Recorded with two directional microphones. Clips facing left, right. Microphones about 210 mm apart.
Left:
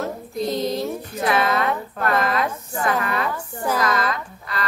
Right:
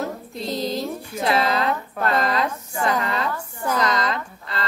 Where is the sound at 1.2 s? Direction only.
25° right (ahead or behind).